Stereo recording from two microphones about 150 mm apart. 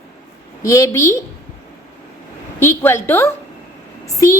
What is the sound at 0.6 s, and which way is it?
Speech, 20° left (ahead or behind).